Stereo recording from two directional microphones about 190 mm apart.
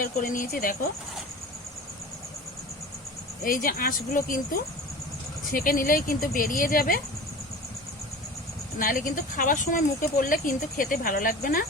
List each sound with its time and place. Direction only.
0.0 s speech: 45° left (ahead or behind)
3.4 s speech: 45° left (ahead or behind)
8.8 s speech: 45° left (ahead or behind)